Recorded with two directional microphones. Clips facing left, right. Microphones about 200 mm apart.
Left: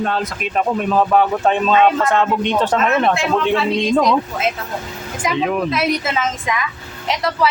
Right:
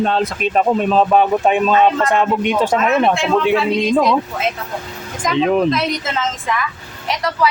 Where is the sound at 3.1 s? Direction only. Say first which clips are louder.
Right 2 dB; centre (ahead or behind).